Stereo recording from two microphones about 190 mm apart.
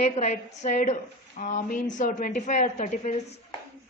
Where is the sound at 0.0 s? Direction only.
35° left (ahead or behind).